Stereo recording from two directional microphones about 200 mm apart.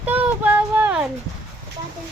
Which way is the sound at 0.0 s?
10° right (ahead or behind).